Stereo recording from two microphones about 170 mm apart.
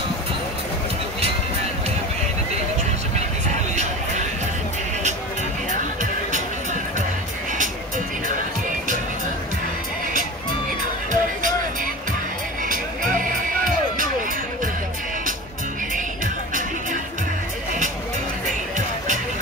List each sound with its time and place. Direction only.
6.3 s music: 45° right (ahead or behind)
11.1 s music: 50° right (ahead or behind)